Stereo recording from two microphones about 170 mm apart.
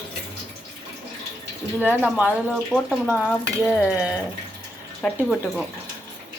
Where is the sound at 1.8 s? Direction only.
10° right (ahead or behind).